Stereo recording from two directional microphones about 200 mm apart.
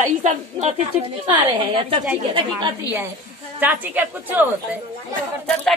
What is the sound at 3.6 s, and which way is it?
A woman's voice, 10° right (ahead or behind).